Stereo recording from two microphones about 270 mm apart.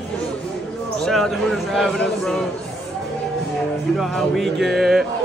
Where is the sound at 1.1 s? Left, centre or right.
Centre.